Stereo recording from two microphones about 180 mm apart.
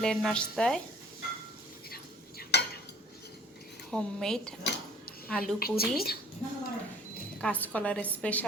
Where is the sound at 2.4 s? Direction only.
65° left (ahead or behind).